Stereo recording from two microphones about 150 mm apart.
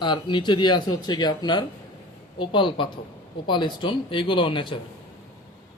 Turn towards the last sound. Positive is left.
turn(degrees=35)  # may be behind; listen again after turning